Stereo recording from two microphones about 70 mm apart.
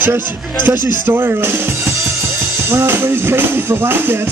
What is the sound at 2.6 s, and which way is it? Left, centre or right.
A man's voice, right.